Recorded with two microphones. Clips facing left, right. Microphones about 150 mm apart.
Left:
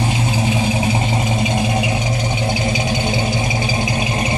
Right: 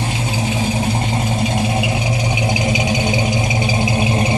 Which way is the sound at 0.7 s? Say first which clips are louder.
Left 1 dB; 5° left (ahead or behind).